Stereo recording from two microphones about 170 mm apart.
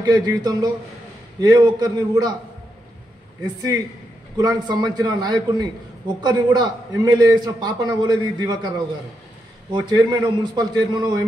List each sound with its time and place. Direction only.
0.0 s a man's voice: 20° right (ahead or behind)
4.4 s a man's voice: 25° right (ahead or behind)